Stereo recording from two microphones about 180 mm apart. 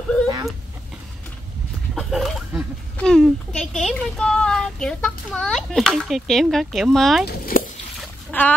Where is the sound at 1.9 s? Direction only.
Centre (ahead or behind).